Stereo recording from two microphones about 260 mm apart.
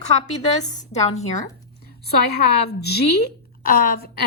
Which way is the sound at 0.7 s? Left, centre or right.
Left.